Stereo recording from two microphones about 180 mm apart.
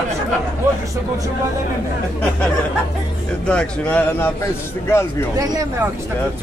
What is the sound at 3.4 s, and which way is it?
Speech, 5° left (ahead or behind).